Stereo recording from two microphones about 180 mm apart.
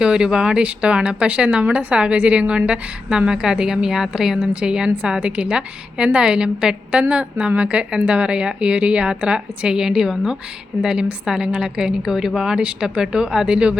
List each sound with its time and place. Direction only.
0.0 s speech: 5° right (ahead or behind)